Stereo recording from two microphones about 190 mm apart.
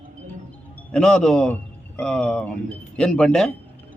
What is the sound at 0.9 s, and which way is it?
A man's voice, 5° left (ahead or behind).